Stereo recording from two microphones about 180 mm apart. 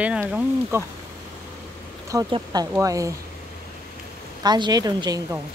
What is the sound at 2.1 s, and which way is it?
A woman's voice, 25° right (ahead or behind).